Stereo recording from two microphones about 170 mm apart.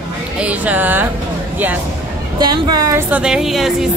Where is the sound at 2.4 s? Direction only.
25° right (ahead or behind).